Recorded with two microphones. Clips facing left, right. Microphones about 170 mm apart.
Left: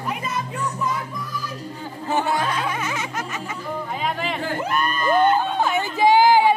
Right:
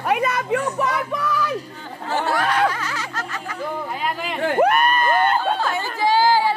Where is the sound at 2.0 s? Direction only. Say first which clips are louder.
Even; 70° right (ahead or behind).